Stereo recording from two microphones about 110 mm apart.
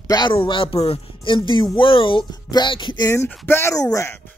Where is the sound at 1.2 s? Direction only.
45° left (ahead or behind).